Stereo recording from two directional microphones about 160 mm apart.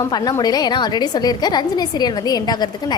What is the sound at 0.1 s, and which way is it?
A woman's voice, 25° left (ahead or behind).